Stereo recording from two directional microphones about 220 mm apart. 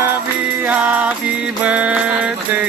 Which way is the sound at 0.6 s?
5° right (ahead or behind).